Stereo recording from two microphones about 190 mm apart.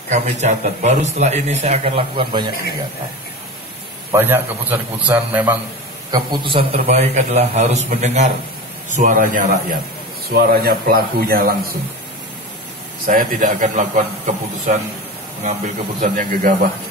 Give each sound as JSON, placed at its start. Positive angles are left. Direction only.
{"t": 0.1, "sound": "a man's voice", "side_deg": -35}
{"t": 4.1, "sound": "a man's voice", "side_deg": -10}
{"t": 6.1, "sound": "a man's voice", "side_deg": -25}
{"t": 13.0, "sound": "a man's voice", "side_deg": -45}
{"t": 16.0, "sound": "a man's voice", "side_deg": -45}